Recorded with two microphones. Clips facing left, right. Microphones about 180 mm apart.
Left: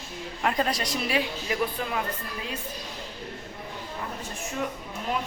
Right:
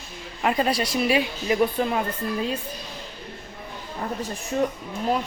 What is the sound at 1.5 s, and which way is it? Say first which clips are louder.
Speech: right 8 dB; 30° right (ahead or behind).